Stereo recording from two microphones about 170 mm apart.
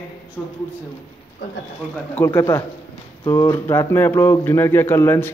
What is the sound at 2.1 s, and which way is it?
A man's voice, 15° left (ahead or behind).